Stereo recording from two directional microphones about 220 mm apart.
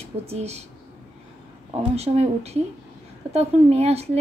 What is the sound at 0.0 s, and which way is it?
Speech, 30° right (ahead or behind).